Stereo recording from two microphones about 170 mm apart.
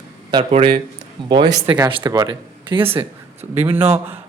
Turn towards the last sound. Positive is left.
turn(degrees=-10)  # may be behind; listen again after turning